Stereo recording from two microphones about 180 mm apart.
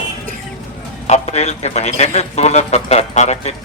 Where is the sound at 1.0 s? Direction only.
35° left (ahead or behind).